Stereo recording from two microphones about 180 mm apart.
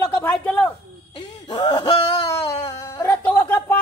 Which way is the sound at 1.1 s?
25° left (ahead or behind).